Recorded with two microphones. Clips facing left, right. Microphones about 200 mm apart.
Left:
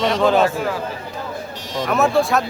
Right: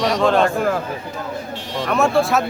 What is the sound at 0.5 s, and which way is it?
Speech, 55° right (ahead or behind).